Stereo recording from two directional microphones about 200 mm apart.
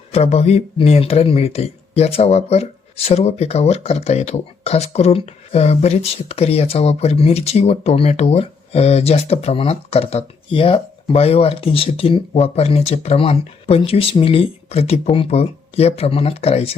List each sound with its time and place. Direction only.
0.1 s speech: 30° left (ahead or behind)